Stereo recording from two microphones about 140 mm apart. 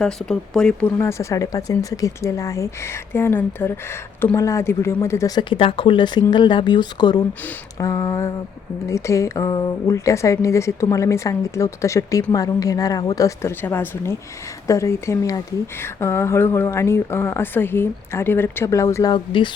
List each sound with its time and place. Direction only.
0.0 s speech: 5° left (ahead or behind)
0.9 s a woman's voice: 20° left (ahead or behind)
19.1 s speech: 35° left (ahead or behind)